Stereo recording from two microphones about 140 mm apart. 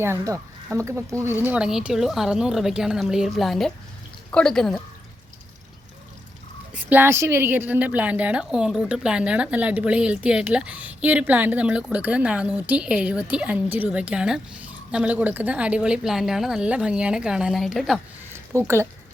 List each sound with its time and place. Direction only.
0.0 s speech: 20° right (ahead or behind); by 4.7 s 5° left (ahead or behind)
6.7 s a woman's voice: 15° right (ahead or behind)
18.3 s a sound: 15° right (ahead or behind)